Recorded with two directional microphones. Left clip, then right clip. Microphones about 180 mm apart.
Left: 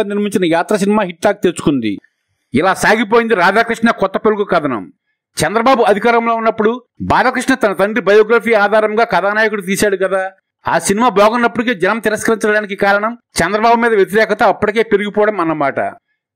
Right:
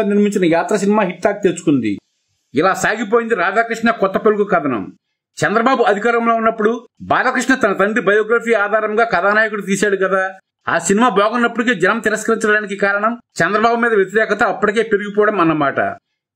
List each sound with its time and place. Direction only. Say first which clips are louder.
0.0 s speech: even; 55° left (ahead or behind)
2.5 s a man's voice: left 3 dB; 40° left (ahead or behind)